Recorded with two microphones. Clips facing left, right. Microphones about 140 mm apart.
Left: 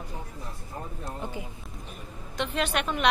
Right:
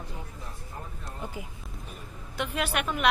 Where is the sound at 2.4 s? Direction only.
10° right (ahead or behind).